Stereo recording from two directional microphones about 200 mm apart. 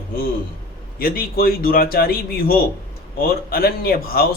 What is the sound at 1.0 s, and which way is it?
A man's voice, 45° left (ahead or behind).